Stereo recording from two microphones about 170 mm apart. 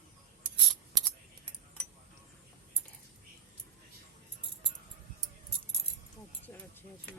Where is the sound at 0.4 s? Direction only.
Centre (ahead or behind).